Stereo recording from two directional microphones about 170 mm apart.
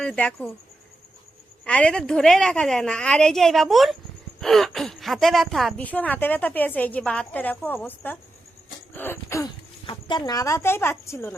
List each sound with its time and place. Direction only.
0.0 s speech: 5° left (ahead or behind)
1.6 s a woman's voice: 5° left (ahead or behind)
9.8 s speech: 25° left (ahead or behind)